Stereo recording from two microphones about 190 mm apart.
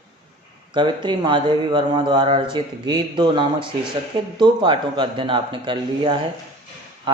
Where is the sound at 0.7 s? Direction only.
25° right (ahead or behind).